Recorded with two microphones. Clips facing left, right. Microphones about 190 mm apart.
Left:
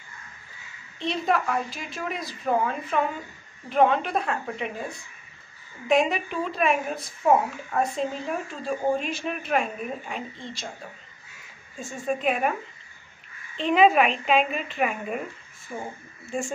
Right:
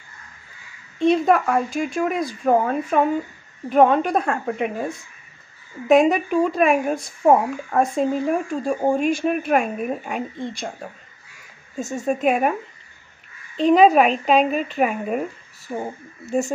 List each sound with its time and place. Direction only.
0.9 s speech: 50° right (ahead or behind)
11.7 s speech: 40° right (ahead or behind)
13.6 s speech: 40° right (ahead or behind)